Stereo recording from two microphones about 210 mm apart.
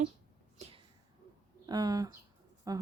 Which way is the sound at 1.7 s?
20° right (ahead or behind).